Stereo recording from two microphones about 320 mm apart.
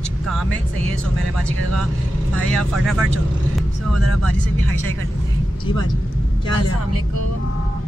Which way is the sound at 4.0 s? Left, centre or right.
Right.